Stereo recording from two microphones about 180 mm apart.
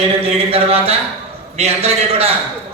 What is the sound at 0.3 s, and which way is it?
A man's voice, 35° right (ahead or behind).